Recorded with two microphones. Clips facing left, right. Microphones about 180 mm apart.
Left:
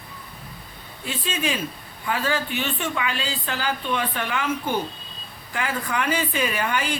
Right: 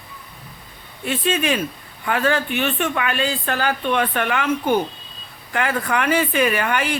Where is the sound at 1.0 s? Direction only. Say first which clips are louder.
Right 6 dB; 65° right (ahead or behind).